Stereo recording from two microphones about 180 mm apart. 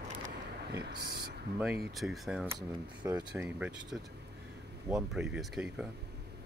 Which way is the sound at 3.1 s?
10° right (ahead or behind).